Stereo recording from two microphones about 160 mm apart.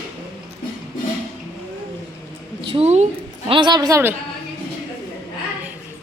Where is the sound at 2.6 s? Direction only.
40° right (ahead or behind).